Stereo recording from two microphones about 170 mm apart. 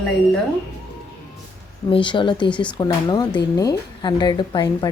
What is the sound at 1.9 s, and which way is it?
Speech, 30° left (ahead or behind).